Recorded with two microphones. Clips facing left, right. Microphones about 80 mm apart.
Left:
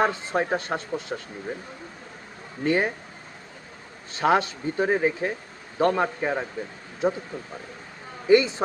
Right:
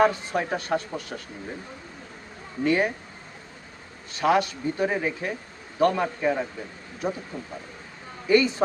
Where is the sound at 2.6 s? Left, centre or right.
Left.